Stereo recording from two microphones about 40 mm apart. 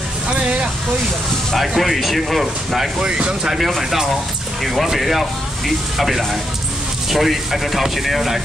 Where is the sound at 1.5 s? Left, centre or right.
Centre.